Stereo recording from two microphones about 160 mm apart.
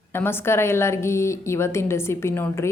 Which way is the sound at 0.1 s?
15° left (ahead or behind).